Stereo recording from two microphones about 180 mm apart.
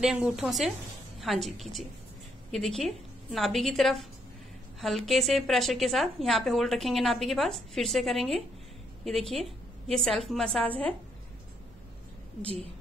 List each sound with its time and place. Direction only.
0.0 s a woman's voice: 5° right (ahead or behind)